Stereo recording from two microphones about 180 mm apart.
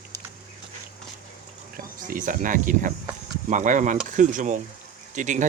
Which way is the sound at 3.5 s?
45° right (ahead or behind).